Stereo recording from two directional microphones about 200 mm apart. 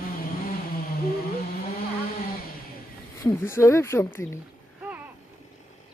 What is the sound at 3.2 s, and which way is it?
Speech, 15° left (ahead or behind).